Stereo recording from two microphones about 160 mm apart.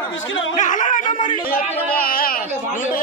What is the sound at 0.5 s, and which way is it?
A man's voice, 50° left (ahead or behind).